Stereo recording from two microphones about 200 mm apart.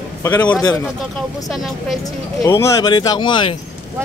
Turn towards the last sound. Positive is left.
turn(degrees=25)  # may be behind; listen again after turning